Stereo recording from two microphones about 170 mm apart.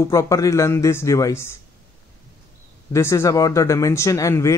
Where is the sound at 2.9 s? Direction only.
15° left (ahead or behind).